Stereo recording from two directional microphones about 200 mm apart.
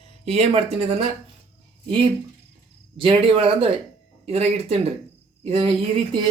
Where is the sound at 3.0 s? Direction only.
25° right (ahead or behind).